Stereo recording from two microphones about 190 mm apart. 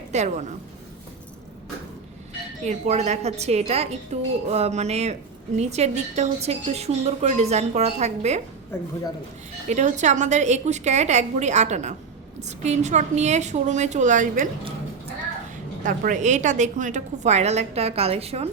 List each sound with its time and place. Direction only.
0.1 s a woman's voice: 35° right (ahead or behind)
2.6 s a woman's voice: 40° right (ahead or behind)
9.6 s a woman's voice: 40° right (ahead or behind)
15.8 s a woman's voice: 45° right (ahead or behind)